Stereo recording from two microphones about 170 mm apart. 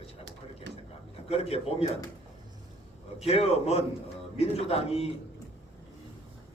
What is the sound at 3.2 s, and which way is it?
Speech, 35° left (ahead or behind).